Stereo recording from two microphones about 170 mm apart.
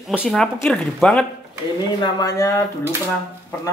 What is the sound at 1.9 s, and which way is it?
Speech, 25° left (ahead or behind).